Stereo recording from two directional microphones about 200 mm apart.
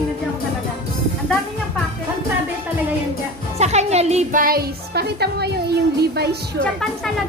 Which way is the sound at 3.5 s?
35° right (ahead or behind).